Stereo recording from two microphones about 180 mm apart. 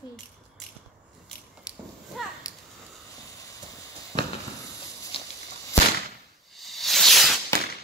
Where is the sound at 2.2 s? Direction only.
Centre (ahead or behind).